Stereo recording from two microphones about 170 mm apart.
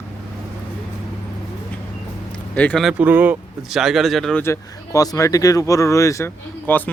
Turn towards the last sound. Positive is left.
turn(degrees=10)  # may be behind; listen again after turning